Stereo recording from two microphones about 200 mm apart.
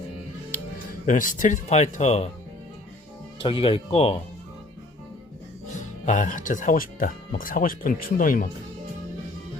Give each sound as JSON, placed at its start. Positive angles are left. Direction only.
{"t": 0.5, "sound": "speech", "side_deg": 45}
{"t": 3.3, "sound": "speech", "side_deg": 25}
{"t": 5.7, "sound": "speech", "side_deg": 40}